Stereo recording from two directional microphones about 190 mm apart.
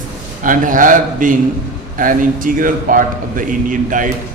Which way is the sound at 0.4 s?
45° right (ahead or behind).